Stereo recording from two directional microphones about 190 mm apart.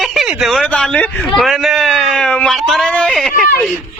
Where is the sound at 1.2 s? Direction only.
Centre (ahead or behind).